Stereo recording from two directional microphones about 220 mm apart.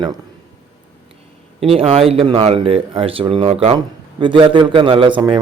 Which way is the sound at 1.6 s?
25° right (ahead or behind).